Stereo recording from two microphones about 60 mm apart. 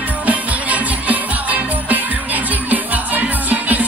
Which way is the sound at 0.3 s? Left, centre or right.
Right.